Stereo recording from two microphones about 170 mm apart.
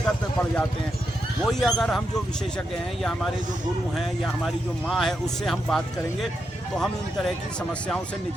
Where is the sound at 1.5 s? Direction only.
Centre (ahead or behind).